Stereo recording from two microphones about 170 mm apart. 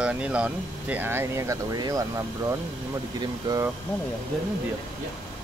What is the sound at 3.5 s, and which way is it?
Speech, 25° right (ahead or behind).